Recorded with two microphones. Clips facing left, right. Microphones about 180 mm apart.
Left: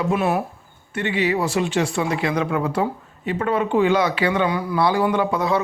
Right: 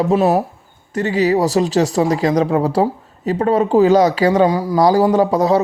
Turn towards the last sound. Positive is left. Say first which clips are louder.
# right 7 dB
turn(degrees=-40)  # may be behind; listen again after turning